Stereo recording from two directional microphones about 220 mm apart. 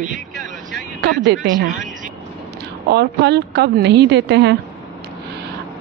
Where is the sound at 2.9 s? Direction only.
50° right (ahead or behind).